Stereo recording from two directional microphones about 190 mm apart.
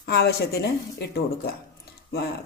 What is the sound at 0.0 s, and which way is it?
Speech, 55° left (ahead or behind).